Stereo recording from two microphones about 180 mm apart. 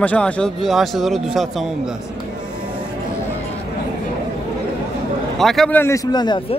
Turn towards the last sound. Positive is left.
turn(degrees=25)  # may be behind; listen again after turning